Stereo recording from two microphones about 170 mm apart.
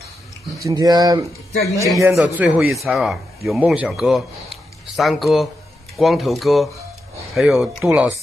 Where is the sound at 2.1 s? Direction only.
10° right (ahead or behind).